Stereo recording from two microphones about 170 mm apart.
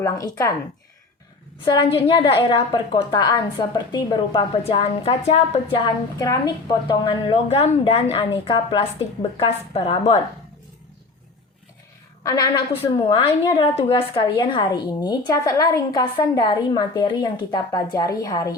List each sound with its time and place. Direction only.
0.0 s a woman's voice: 20° left (ahead or behind)
1.6 s a woman's voice: 25° left (ahead or behind)
5.8 s a woman's voice: 20° left (ahead or behind)
12.2 s a woman's voice: 20° left (ahead or behind)
12.7 s a woman's voice: 30° left (ahead or behind)